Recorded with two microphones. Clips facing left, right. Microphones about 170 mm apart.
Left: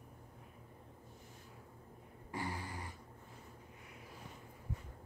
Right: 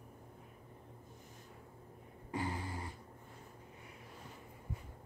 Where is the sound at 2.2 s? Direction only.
20° right (ahead or behind).